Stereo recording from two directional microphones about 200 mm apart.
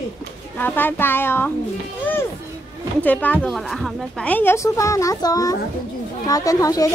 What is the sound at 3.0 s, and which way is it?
A woman's voice, 10° left (ahead or behind).